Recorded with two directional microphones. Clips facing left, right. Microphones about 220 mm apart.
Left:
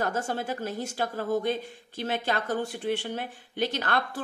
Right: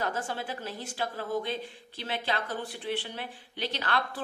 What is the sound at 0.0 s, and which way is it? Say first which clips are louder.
A woman's voice: left 4 dB; 45° left (ahead or behind).